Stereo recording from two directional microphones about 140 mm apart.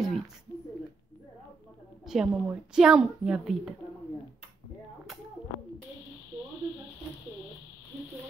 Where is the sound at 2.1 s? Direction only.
5° right (ahead or behind).